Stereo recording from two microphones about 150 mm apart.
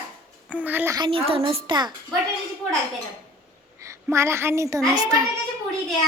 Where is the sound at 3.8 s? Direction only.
20° right (ahead or behind).